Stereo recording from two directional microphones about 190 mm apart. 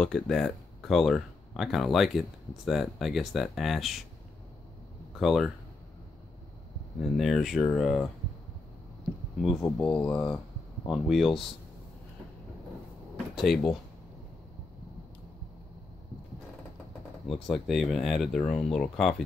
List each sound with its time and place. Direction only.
0.0 s speech: centre (ahead or behind)
5.2 s speech: centre (ahead or behind)
7.0 s speech: centre (ahead or behind)
9.8 s speech: 15° left (ahead or behind)
10.1 s speech: 5° left (ahead or behind)
13.4 s speech: centre (ahead or behind)
17.3 s speech: centre (ahead or behind)